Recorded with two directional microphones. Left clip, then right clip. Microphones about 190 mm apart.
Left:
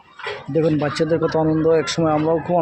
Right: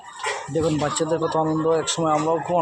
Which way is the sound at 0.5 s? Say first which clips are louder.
Left 5 dB; 35° left (ahead or behind).